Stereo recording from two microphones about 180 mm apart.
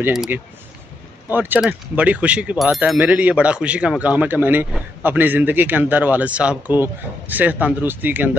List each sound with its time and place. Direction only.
0.0 s speech: 5° right (ahead or behind)